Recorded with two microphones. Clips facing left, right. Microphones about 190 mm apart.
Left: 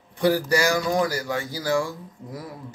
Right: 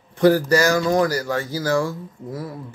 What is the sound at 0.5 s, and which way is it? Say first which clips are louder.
Speech: right 4 dB; 15° left (ahead or behind).